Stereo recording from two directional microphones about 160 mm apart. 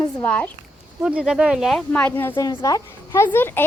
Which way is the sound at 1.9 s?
10° left (ahead or behind).